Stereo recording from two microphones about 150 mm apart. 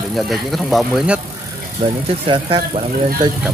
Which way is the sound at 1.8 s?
45° right (ahead or behind).